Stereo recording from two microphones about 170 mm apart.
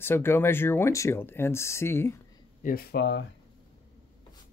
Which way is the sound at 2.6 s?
60° left (ahead or behind).